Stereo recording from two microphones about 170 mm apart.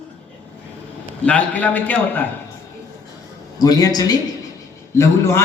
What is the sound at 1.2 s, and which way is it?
A man's voice, 10° left (ahead or behind).